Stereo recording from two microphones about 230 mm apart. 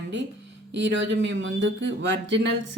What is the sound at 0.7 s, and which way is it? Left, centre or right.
Speech, right.